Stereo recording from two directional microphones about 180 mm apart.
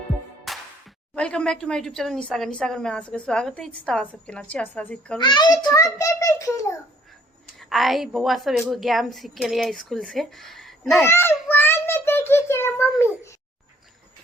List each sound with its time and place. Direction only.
0.5 s music: centre (ahead or behind)
1.1 s speech: 5° left (ahead or behind)
5.2 s a child's voice: 25° left (ahead or behind)
7.6 s speech: centre (ahead or behind)
11.1 s child singing: 15° left (ahead or behind)